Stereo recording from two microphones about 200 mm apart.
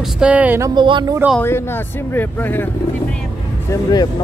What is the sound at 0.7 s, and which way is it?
Speech, 25° right (ahead or behind).